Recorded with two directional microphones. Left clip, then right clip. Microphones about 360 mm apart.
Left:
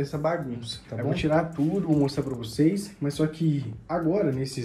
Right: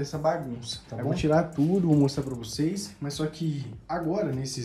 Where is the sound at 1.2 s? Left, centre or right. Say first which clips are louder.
Right 1 dB; right.